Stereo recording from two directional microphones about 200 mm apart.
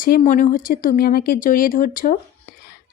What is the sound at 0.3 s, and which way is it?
Speech, 40° left (ahead or behind).